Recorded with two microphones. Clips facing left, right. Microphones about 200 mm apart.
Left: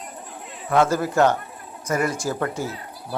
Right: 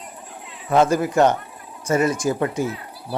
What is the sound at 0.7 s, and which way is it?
Speech, 20° right (ahead or behind).